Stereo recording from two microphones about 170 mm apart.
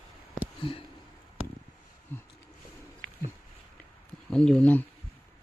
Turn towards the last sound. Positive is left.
turn(degrees=10)  # may be behind; listen again after turning